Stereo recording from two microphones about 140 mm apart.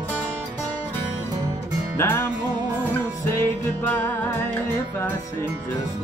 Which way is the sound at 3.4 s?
15° left (ahead or behind).